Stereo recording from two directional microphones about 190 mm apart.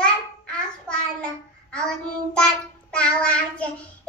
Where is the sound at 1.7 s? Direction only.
5° left (ahead or behind).